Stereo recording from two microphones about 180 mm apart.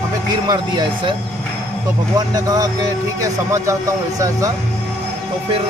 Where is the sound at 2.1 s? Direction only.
20° right (ahead or behind).